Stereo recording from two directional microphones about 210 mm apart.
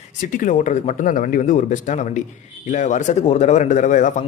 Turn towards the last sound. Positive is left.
turn(degrees=35)  # may be behind; listen again after turning